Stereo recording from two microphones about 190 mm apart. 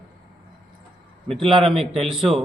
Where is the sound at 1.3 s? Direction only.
Centre (ahead or behind).